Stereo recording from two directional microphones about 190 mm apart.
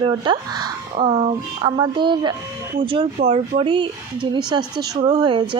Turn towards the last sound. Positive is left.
turn(degrees=-25)  # may be behind; listen again after turning